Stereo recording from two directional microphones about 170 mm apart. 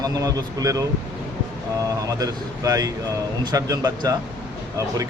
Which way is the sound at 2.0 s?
20° right (ahead or behind).